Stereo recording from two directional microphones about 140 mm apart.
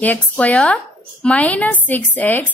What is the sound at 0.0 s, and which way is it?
A woman's voice, 10° left (ahead or behind).